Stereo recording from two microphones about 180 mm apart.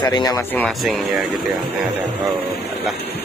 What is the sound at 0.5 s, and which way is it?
Speech, 10° left (ahead or behind).